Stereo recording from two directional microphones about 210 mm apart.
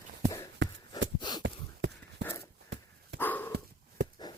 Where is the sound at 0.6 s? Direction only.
60° right (ahead or behind).